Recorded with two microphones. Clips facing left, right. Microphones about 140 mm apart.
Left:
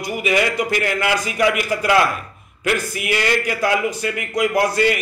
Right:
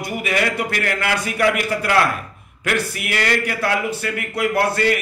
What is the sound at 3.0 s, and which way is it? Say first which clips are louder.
Speech: left 1 dB; 15° left (ahead or behind).